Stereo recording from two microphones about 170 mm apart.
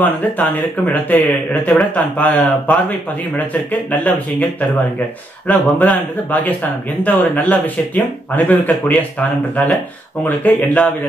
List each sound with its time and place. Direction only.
1.0 s speech: 10° left (ahead or behind)